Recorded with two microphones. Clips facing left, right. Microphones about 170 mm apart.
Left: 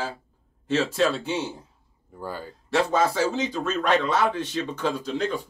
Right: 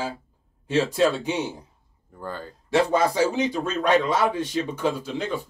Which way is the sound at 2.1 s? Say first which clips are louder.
Even; 10° left (ahead or behind).